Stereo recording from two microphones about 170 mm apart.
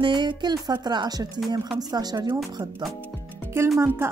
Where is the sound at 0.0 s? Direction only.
30° right (ahead or behind).